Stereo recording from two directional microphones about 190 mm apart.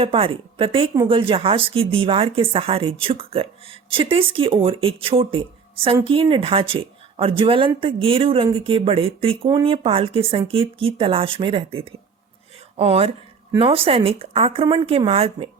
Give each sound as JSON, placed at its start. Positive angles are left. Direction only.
{"t": 0.0, "sound": "speech", "side_deg": -30}